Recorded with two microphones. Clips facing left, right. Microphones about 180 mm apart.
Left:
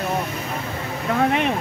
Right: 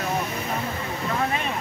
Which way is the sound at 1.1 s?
70° left (ahead or behind).